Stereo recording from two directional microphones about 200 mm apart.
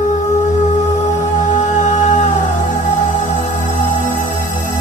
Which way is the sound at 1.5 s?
35° left (ahead or behind).